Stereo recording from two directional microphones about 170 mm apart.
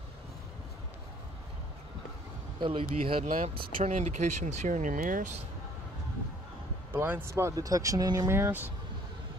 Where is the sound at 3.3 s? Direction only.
45° right (ahead or behind).